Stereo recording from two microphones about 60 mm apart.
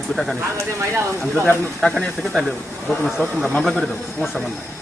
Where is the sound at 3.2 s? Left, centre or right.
Left.